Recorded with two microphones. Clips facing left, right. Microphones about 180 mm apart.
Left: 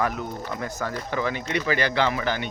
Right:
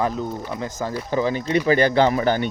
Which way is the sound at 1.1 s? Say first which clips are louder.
Right 7 dB; 35° right (ahead or behind).